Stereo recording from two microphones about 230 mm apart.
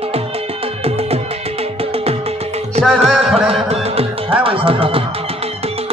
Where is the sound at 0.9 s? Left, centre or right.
Right.